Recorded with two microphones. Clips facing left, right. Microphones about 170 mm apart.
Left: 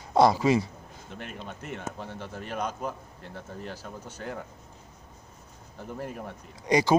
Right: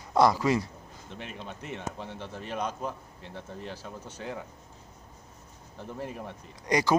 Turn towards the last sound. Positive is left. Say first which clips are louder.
# left 3 dB
turn(degrees=25)  # may be behind; listen again after turning